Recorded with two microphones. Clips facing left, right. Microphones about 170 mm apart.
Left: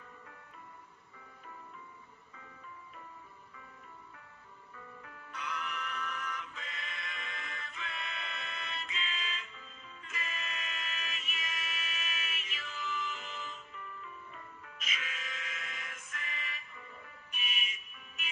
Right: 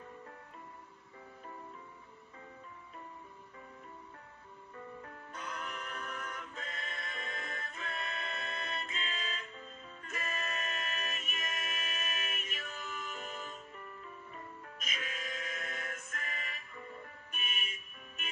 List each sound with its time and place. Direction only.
5.0 s music: 40° right (ahead or behind)